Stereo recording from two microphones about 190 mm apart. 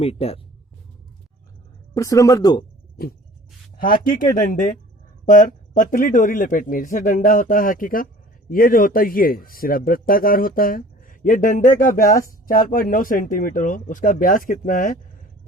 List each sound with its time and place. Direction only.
0.0 s speech: 30° left (ahead or behind)
2.0 s speech: 15° left (ahead or behind)
3.8 s speech: 45° left (ahead or behind)